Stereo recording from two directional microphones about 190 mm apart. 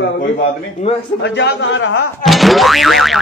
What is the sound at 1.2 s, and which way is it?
Speech, 70° left (ahead or behind).